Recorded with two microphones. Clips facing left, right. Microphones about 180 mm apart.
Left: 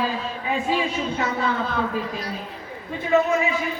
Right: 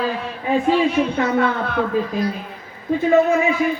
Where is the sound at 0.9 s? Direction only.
65° right (ahead or behind).